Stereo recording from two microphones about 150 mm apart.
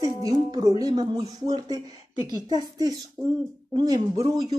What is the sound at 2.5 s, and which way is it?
Speech, 25° right (ahead or behind).